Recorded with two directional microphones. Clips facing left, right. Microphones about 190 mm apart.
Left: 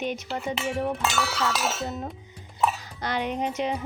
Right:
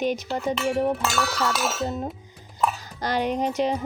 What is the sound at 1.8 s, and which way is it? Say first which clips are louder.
Speech: right 4 dB; 35° right (ahead or behind).